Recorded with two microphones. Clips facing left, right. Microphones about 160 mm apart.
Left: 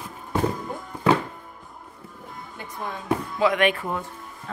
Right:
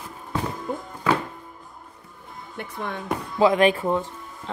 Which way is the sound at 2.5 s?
65° right (ahead or behind).